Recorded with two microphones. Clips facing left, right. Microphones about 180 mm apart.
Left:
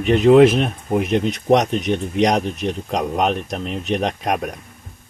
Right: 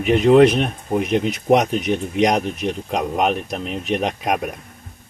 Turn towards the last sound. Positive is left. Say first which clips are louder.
# even
turn(degrees=0)  # may be behind; listen again after turning